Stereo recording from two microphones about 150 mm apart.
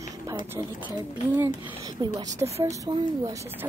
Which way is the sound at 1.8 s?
25° right (ahead or behind).